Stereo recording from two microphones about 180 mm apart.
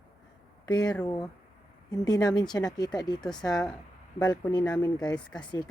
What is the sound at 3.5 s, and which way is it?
Speech, 5° left (ahead or behind).